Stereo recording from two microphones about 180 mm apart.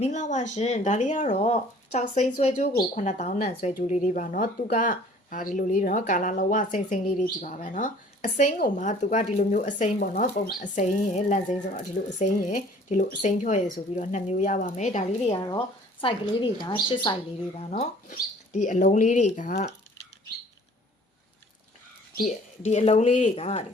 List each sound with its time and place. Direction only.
0.0 s speech: 40° left (ahead or behind)
15.4 s a woman's voice: 25° left (ahead or behind)
17.6 s speech: 35° left (ahead or behind)
22.2 s speech: 40° left (ahead or behind)